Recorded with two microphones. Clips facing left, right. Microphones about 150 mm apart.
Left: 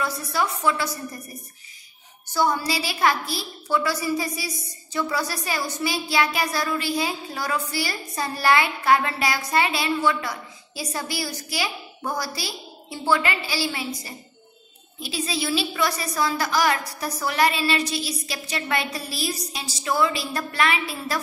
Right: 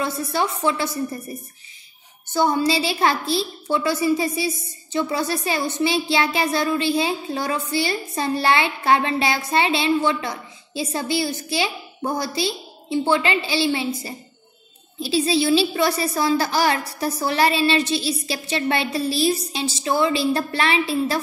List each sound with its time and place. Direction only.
0.0 s a woman's voice: 25° right (ahead or behind)
2.3 s a woman's voice: 25° right (ahead or behind)